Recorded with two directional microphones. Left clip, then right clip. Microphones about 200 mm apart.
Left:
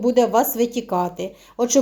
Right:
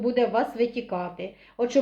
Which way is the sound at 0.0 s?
40° left (ahead or behind).